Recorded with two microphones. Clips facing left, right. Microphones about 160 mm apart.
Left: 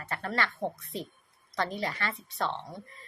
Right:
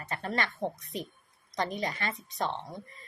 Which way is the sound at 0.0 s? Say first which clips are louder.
Even; 20° right (ahead or behind).